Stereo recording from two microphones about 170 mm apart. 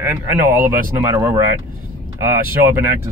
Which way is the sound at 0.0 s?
10° right (ahead or behind).